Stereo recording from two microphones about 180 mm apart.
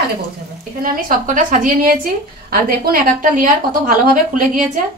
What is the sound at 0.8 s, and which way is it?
A woman's voice, 50° right (ahead or behind).